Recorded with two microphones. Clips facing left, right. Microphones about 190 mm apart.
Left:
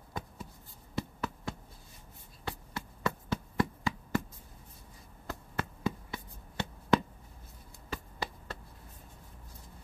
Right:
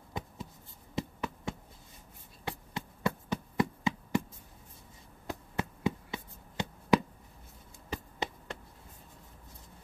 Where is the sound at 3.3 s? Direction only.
20° right (ahead or behind).